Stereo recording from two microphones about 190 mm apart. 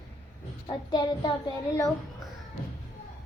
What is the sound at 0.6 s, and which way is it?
Child singing, 25° left (ahead or behind).